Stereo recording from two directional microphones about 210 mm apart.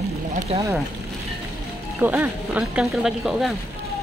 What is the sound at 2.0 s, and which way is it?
Speech, 10° right (ahead or behind).